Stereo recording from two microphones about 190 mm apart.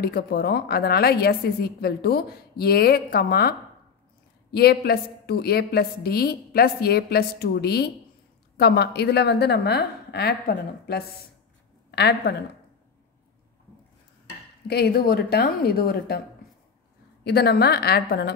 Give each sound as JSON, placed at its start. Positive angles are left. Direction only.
{"t": 0.0, "sound": "a woman's voice", "side_deg": 55}
{"t": 14.7, "sound": "a woman's voice", "side_deg": 55}
{"t": 17.2, "sound": "a woman's voice", "side_deg": 55}